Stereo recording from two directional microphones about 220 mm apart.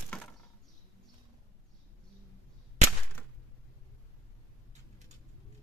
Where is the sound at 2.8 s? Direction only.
30° right (ahead or behind).